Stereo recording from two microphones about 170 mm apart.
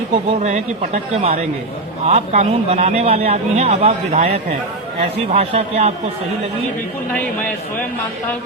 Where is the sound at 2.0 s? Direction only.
40° right (ahead or behind).